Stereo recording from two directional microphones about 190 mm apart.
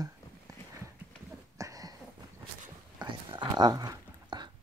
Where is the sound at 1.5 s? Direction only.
15° right (ahead or behind).